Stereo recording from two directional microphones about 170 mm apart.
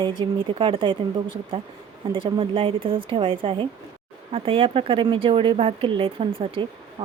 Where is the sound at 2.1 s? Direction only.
30° right (ahead or behind).